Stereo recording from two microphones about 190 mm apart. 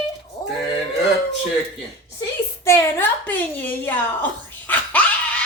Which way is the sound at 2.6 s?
15° left (ahead or behind).